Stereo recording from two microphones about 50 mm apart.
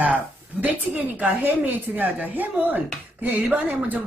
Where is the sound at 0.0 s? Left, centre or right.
Right.